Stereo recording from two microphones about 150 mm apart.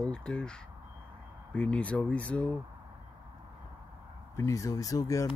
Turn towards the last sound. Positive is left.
turn(degrees=20)  # may be behind; listen again after turning